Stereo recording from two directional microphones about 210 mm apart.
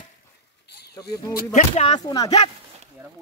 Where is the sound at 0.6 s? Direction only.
50° left (ahead or behind).